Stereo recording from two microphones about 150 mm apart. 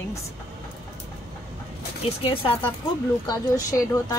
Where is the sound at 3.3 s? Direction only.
25° left (ahead or behind).